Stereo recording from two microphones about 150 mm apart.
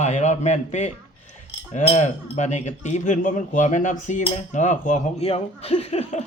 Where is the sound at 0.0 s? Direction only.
50° left (ahead or behind).